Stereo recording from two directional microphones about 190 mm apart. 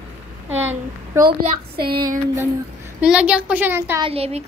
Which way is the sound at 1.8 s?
50° right (ahead or behind).